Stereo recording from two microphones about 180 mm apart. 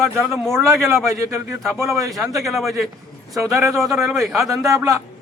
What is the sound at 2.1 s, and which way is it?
Speech, centre (ahead or behind).